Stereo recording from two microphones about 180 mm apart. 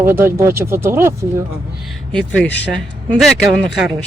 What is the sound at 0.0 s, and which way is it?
Speech, 10° right (ahead or behind).